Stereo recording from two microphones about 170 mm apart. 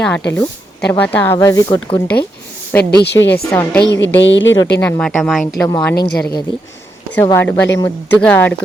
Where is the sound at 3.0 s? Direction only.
85° left.